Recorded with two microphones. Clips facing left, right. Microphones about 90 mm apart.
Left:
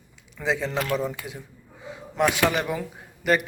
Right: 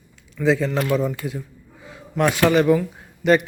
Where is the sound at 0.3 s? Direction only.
20° left (ahead or behind).